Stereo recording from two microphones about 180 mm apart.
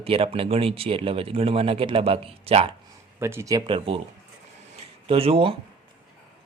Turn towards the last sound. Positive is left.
turn(degrees=-30)  # may be behind; listen again after turning